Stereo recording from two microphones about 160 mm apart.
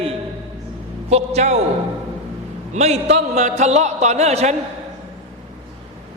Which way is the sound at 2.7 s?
45° right (ahead or behind).